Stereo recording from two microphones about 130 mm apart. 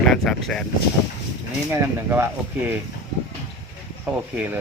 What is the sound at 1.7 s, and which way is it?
Speech, 20° right (ahead or behind).